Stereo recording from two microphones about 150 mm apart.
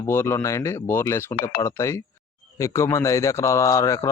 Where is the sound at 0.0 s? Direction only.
15° left (ahead or behind).